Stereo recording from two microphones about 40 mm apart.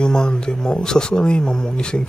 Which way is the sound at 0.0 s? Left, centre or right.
Left.